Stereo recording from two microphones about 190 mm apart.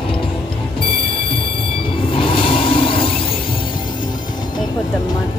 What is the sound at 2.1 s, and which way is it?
Vehicle, 30° left (ahead or behind).